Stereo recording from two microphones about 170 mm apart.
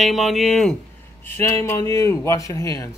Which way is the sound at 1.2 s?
15° left (ahead or behind).